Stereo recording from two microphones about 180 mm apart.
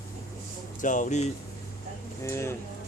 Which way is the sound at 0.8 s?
45° left (ahead or behind).